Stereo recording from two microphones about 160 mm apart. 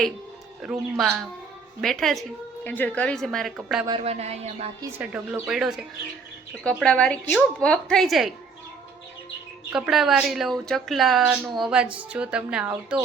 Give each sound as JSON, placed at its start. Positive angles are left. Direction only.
{"t": 0.6, "sound": "a woman's voice", "side_deg": -5}
{"t": 3.8, "sound": "a sound", "side_deg": -35}
{"t": 4.8, "sound": "a woman's voice", "side_deg": -10}
{"t": 9.7, "sound": "a woman's voice", "side_deg": -5}